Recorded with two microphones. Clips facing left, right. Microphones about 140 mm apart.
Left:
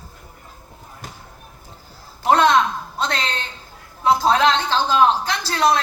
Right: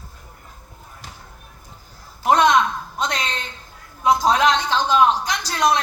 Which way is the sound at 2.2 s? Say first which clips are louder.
Even; 15° right (ahead or behind).